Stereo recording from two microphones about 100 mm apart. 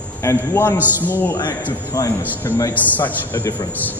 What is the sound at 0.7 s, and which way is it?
Speech, 20° right (ahead or behind).